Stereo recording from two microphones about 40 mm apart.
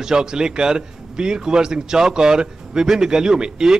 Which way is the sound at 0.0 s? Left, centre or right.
Centre.